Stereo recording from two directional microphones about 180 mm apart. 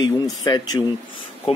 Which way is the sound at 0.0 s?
20° left (ahead or behind).